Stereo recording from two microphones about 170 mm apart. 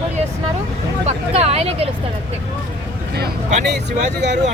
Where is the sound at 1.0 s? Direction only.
35° right (ahead or behind).